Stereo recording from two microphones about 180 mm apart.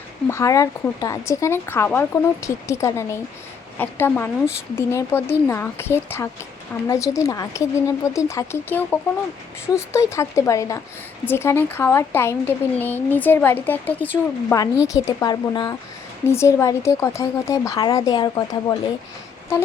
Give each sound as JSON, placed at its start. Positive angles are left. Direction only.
{"t": 0.3, "sound": "speech", "side_deg": 15}